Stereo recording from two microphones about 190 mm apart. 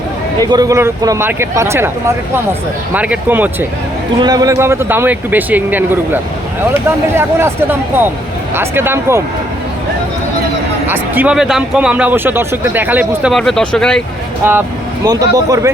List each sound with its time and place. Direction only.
0.5 s a man's voice: 20° right (ahead or behind)
4.2 s a man's voice: 20° right (ahead or behind)
10.8 s a man's voice: 10° right (ahead or behind)
13.3 s speech: centre (ahead or behind)
15.0 s a man's voice: 20° right (ahead or behind)